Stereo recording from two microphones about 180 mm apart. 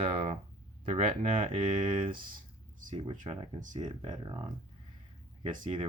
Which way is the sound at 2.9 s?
30° right (ahead or behind).